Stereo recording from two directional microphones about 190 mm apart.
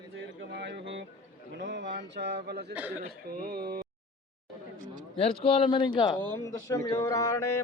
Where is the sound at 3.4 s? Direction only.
55° right (ahead or behind).